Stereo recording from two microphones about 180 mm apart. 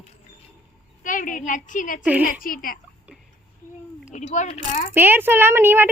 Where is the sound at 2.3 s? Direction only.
50° left (ahead or behind).